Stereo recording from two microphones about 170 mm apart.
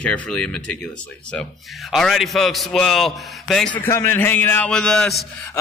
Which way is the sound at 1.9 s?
Centre (ahead or behind).